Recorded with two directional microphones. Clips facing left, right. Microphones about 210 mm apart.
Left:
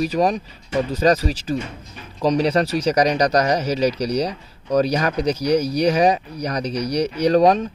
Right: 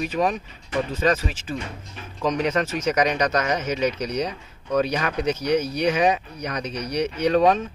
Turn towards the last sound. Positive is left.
turn(degrees=35)  # may be behind; listen again after turning